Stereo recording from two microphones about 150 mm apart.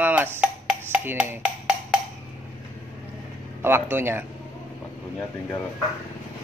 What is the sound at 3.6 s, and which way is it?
Speech, 15° right (ahead or behind).